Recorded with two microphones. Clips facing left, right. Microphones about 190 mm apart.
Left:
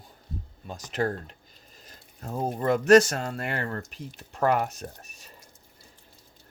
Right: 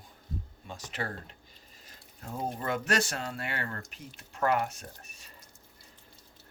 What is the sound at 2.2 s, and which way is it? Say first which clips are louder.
Speech: left 7 dB; 40° left (ahead or behind).